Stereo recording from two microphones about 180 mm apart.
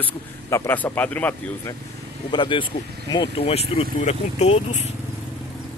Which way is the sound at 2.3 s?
25° left (ahead or behind).